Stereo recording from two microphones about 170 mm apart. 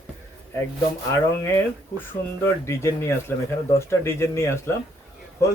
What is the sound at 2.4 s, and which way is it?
Speech, 15° left (ahead or behind).